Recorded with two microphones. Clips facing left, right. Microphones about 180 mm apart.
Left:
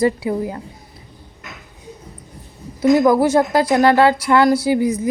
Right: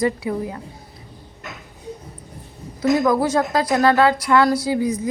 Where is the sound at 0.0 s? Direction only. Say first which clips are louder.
Left 3 dB; 25° left (ahead or behind).